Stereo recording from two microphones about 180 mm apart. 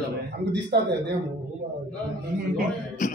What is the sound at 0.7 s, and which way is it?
Speech, 70° right (ahead or behind).